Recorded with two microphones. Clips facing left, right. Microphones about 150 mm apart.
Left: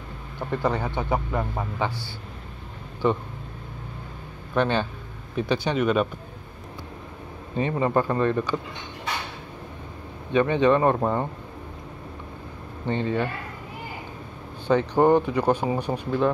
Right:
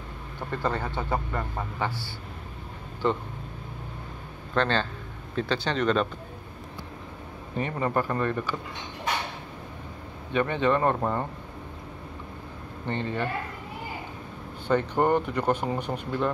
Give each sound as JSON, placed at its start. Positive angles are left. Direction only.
{"t": 0.5, "sound": "speech", "side_deg": 15}
{"t": 3.0, "sound": "speech", "side_deg": 15}
{"t": 4.6, "sound": "speech", "side_deg": 15}
{"t": 7.5, "sound": "speech", "side_deg": 20}
{"t": 10.3, "sound": "speech", "side_deg": 15}
{"t": 12.8, "sound": "speech", "side_deg": 15}
{"t": 15.0, "sound": "speech", "side_deg": 15}